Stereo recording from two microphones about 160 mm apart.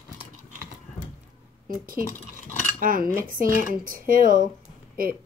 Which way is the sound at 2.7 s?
60° right (ahead or behind).